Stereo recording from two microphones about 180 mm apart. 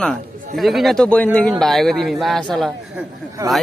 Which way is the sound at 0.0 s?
Centre (ahead or behind).